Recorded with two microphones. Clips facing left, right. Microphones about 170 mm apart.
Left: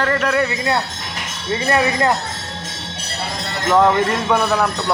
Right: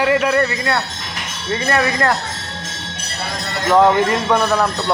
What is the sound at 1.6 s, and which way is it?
Speech, 20° left (ahead or behind).